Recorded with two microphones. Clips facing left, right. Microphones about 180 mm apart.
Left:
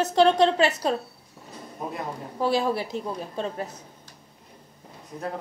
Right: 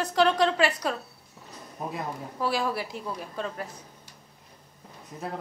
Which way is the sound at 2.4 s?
25° left (ahead or behind).